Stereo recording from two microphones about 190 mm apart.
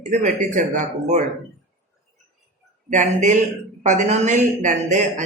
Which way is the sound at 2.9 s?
40° right (ahead or behind).